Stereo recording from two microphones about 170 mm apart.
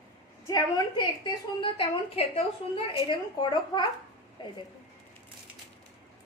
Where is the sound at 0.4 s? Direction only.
25° left (ahead or behind).